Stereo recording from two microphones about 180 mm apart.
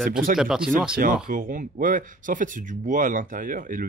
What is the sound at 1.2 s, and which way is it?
Speech, 50° right (ahead or behind).